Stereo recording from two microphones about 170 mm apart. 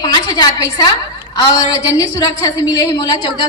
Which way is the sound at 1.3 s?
20° left (ahead or behind).